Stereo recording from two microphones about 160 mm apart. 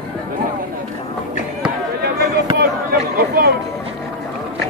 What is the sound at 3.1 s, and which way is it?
Speech, 65° right (ahead or behind).